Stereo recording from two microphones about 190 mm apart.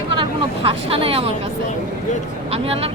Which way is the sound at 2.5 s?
30° right (ahead or behind).